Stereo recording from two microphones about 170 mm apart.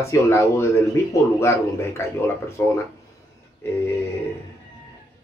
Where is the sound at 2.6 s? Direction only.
15° left (ahead or behind).